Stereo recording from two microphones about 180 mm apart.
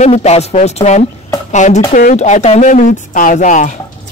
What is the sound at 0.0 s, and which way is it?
Speech, 35° left (ahead or behind).